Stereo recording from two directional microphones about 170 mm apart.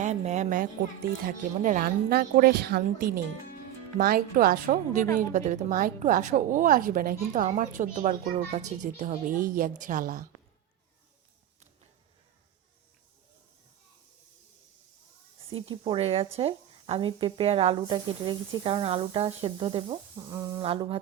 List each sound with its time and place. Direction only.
0.0 s a child's voice: 45° right (ahead or behind)
15.4 s a woman's voice: 30° right (ahead or behind)